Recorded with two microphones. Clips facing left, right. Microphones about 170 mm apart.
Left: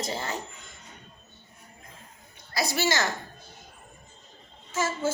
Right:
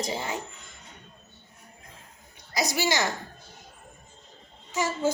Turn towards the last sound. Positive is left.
turn(degrees=-15)  # may be behind; listen again after turning